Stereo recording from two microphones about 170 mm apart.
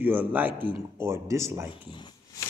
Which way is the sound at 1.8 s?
25° left (ahead or behind).